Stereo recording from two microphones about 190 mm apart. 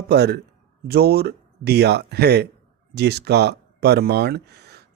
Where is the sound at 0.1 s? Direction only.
60° right (ahead or behind).